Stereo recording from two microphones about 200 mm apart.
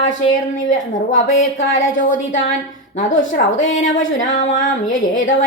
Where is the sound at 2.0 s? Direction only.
40° left (ahead or behind).